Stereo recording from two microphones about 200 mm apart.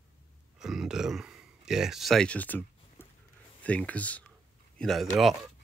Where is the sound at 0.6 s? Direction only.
Centre (ahead or behind).